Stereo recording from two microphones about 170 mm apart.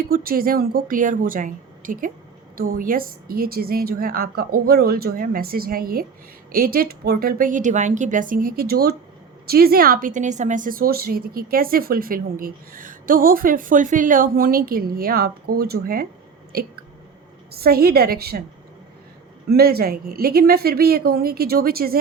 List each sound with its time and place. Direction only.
0.1 s a woman's voice: 60° right (ahead or behind)
17.5 s a woman's voice: 65° right (ahead or behind)
19.5 s a woman's voice: 65° right (ahead or behind)